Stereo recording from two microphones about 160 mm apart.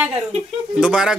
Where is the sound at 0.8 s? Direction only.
5° right (ahead or behind).